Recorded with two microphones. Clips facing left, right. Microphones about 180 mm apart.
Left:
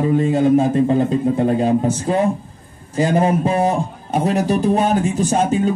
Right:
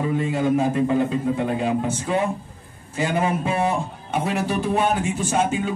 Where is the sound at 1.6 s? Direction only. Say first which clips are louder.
Left 6 dB; 35° left (ahead or behind).